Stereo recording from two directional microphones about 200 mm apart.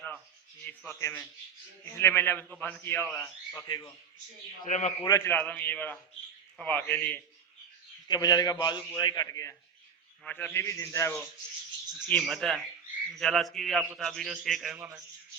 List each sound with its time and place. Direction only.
0.6 s a man's voice: 5° left (ahead or behind)
4.6 s a man's voice: 35° left (ahead or behind)
5.0 s a man's voice: 15° left (ahead or behind)
8.0 s a man's voice: 20° left (ahead or behind); by 14.8 s centre (ahead or behind)